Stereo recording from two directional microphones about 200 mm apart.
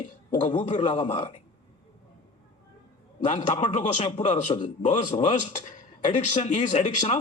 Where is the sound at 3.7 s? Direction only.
35° left (ahead or behind).